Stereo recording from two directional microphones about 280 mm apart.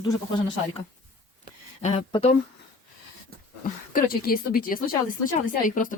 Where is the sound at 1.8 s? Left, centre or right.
Left.